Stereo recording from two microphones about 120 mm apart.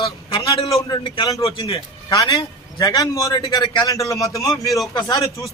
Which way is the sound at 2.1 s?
35° left (ahead or behind).